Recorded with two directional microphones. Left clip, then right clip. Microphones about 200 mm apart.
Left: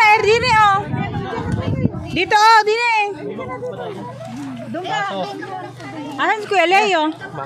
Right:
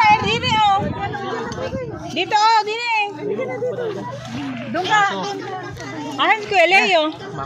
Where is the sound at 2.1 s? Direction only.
45° left (ahead or behind).